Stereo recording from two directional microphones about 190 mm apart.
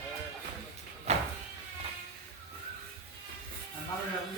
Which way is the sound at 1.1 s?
35° right (ahead or behind).